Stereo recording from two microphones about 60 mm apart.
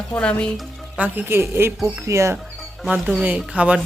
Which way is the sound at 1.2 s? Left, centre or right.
Right.